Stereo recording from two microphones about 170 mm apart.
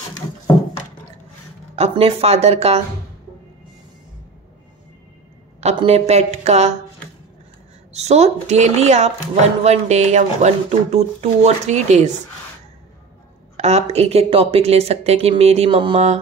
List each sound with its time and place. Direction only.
1.8 s speech: 35° right (ahead or behind)
5.6 s speech: 40° right (ahead or behind)
7.9 s speech: 40° right (ahead or behind)
13.6 s speech: 40° right (ahead or behind)